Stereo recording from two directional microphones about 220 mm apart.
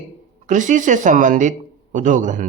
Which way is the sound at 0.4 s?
35° right (ahead or behind).